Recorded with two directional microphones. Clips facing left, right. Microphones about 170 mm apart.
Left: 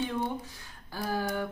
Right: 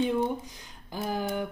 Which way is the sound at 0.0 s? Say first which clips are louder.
Right 5 dB; 15° right (ahead or behind).